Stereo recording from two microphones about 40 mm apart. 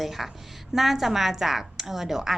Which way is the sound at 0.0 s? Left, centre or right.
Centre.